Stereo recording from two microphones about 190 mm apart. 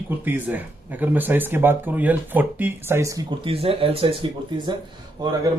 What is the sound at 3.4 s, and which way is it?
Speech, 30° right (ahead or behind).